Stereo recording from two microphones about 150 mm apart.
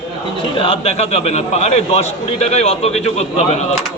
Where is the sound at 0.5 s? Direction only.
40° left (ahead or behind).